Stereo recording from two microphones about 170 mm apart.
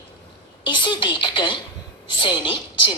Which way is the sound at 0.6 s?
30° left (ahead or behind).